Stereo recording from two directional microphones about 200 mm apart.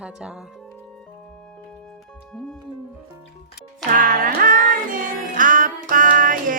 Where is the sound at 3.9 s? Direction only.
45° right (ahead or behind).